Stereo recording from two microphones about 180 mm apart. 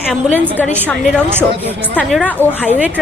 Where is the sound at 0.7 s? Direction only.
10° right (ahead or behind).